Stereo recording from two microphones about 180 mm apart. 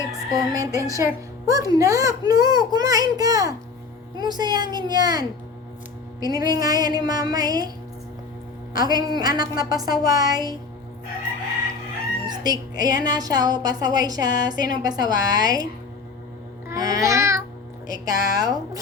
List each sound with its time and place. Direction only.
0.3 s speech: 20° right (ahead or behind)
8.7 s speech: 20° right (ahead or behind)
12.3 s speech: 20° right (ahead or behind)
16.6 s babbling: 20° right (ahead or behind)
17.8 s speech: 20° right (ahead or behind)